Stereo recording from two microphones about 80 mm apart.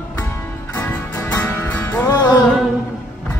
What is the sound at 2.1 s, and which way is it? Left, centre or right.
Music, left.